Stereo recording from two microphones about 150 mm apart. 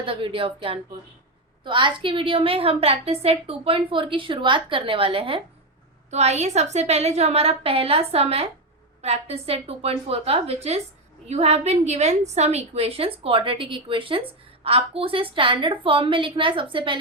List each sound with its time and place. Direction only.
0.0 s a woman's voice: 35° right (ahead or behind)